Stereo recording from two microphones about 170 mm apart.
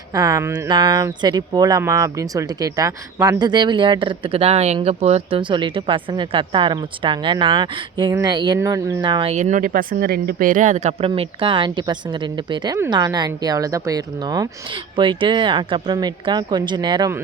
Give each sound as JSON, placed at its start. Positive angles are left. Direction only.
{"t": 0.1, "sound": "speech", "side_deg": -20}
{"t": 9.3, "sound": "speech", "side_deg": -45}